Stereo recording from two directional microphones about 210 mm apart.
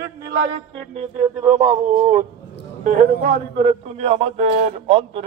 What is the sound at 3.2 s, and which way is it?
A man's voice, 35° right (ahead or behind).